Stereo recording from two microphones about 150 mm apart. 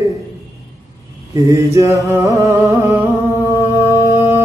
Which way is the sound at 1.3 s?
20° right (ahead or behind).